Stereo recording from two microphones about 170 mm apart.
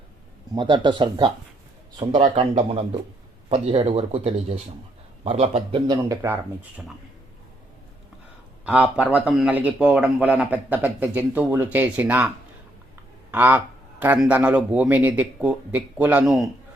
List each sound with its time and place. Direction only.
0.5 s speech: 30° right (ahead or behind)
5.9 s speech: 20° right (ahead or behind)
8.6 s speech: 10° right (ahead or behind)
13.3 s speech: 10° right (ahead or behind)